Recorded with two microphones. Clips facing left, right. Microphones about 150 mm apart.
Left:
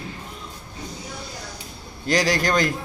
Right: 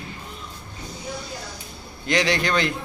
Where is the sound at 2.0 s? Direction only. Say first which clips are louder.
Left 1 dB; 40° left (ahead or behind).